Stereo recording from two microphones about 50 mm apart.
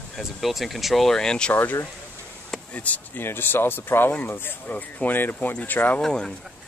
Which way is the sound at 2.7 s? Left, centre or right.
Left.